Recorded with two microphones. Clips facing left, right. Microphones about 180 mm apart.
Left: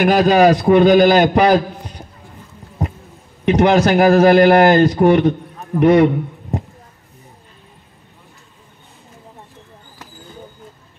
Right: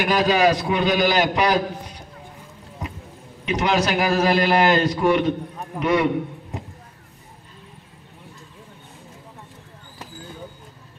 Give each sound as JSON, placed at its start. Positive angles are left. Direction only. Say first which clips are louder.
{"t": 0.0, "sound": "a man's voice", "louder": "left 7 dB", "side_deg": 50}
{"t": 3.4, "sound": "a man's voice", "louder": "left 8 dB", "side_deg": 55}